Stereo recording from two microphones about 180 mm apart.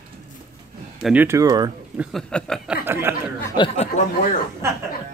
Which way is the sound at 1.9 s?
5° left (ahead or behind).